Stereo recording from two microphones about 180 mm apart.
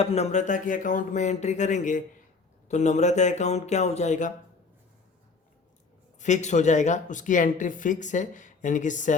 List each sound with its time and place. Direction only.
0.0 s speech: 35° left (ahead or behind)
6.1 s speech: 40° left (ahead or behind)